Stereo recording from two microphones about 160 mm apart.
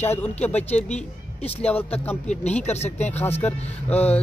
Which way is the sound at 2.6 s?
40° left (ahead or behind).